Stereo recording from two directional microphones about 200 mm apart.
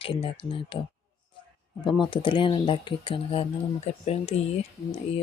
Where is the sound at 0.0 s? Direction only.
25° left (ahead or behind).